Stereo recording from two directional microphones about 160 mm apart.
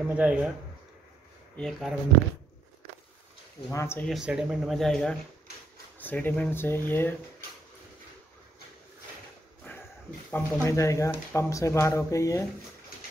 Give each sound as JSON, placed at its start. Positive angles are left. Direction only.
{"t": 0.1, "sound": "speech", "side_deg": -5}
{"t": 1.6, "sound": "speech", "side_deg": 0}
{"t": 3.7, "sound": "speech", "side_deg": 15}
{"t": 4.1, "sound": "speech", "side_deg": -5}
{"t": 10.3, "sound": "speech", "side_deg": 20}